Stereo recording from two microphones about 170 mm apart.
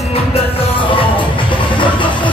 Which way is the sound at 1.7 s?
30° left (ahead or behind).